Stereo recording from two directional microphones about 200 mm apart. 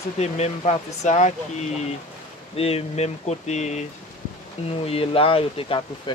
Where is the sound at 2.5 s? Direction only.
30° left (ahead or behind).